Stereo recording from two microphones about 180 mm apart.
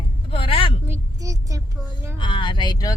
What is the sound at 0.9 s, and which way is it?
Speech, 20° right (ahead or behind).